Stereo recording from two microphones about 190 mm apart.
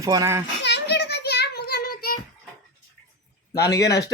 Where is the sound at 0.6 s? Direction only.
60° left (ahead or behind).